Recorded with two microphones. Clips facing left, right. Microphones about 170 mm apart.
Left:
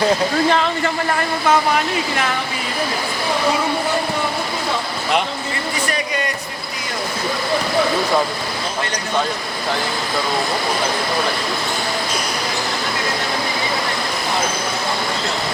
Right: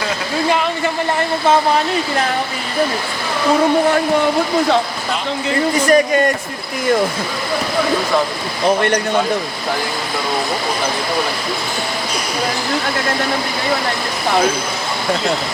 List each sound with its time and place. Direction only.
5.8 s speech: 45° right (ahead or behind)
8.6 s speech: 60° right (ahead or behind)